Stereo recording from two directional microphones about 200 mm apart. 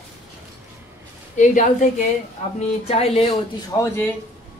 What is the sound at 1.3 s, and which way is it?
Speech, 40° left (ahead or behind).